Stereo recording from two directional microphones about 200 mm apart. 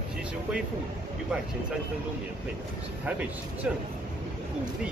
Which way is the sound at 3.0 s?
5° right (ahead or behind).